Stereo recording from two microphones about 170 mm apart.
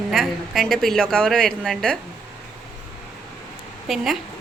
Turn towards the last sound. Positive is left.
turn(degrees=0)  # may be behind; listen again after turning